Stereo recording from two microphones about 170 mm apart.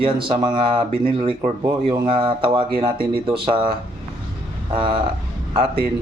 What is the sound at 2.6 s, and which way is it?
Speech, 60° right (ahead or behind).